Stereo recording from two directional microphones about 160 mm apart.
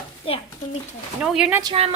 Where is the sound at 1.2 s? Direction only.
5° right (ahead or behind).